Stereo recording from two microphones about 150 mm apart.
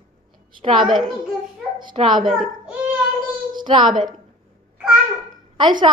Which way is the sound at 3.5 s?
30° right (ahead or behind).